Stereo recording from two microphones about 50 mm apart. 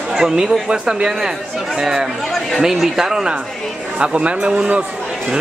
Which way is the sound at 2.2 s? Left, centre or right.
Centre.